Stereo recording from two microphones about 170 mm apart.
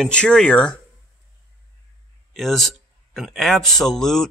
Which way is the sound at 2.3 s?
Centre (ahead or behind).